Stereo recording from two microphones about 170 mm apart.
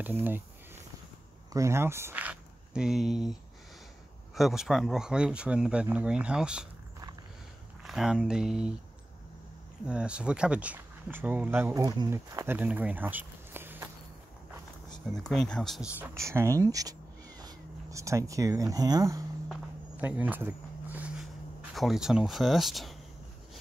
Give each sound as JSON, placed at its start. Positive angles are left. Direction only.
{"t": 0.0, "sound": "speech", "side_deg": -10}
{"t": 1.5, "sound": "speech", "side_deg": -15}
{"t": 4.4, "sound": "speech", "side_deg": 0}
{"t": 7.8, "sound": "speech", "side_deg": 0}
{"t": 9.8, "sound": "speech", "side_deg": -5}
{"t": 15.1, "sound": "speech", "side_deg": 5}
{"t": 16.0, "sound": "speech", "side_deg": -15}
{"t": 20.0, "sound": "speech", "side_deg": -10}